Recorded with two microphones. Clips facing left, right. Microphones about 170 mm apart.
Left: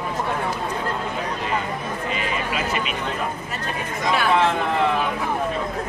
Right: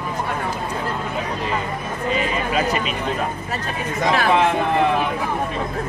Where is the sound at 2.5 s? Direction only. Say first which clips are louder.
Right 4 dB; 35° right (ahead or behind).